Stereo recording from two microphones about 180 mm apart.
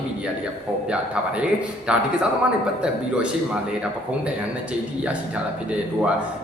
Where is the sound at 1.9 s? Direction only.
5° right (ahead or behind).